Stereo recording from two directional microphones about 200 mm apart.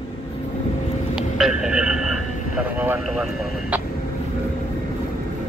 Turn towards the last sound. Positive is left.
turn(degrees=-5)  # may be behind; listen again after turning